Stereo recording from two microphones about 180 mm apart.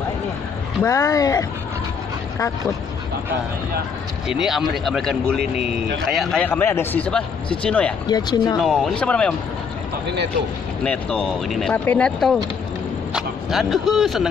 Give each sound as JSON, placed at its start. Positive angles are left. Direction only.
{"t": 0.8, "sound": "a man's voice", "side_deg": 15}
{"t": 4.3, "sound": "a man's voice", "side_deg": 0}
{"t": 8.1, "sound": "speech", "side_deg": 25}
{"t": 8.5, "sound": "speech", "side_deg": 0}
{"t": 10.8, "sound": "a man's voice", "side_deg": 5}